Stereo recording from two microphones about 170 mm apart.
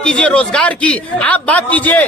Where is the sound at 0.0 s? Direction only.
5° left (ahead or behind).